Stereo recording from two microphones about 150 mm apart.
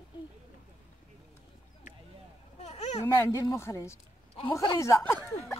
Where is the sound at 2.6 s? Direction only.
45° left (ahead or behind).